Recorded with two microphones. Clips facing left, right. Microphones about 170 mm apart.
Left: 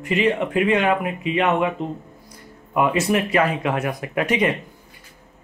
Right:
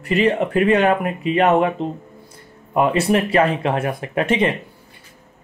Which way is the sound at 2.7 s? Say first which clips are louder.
Right 3 dB; 30° right (ahead or behind).